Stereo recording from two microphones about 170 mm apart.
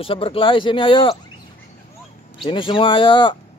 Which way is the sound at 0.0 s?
35° left (ahead or behind).